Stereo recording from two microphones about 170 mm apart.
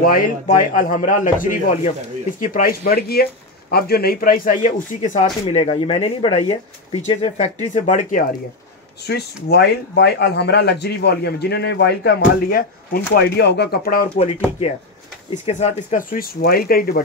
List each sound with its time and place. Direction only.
0.0 s speech: 55° left (ahead or behind)
9.0 s speech: 75° left (ahead or behind)
15.4 s speech: 45° left (ahead or behind); by 17.0 s 60° left (ahead or behind)